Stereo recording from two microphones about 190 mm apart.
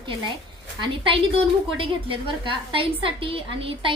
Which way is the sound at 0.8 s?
25° right (ahead or behind).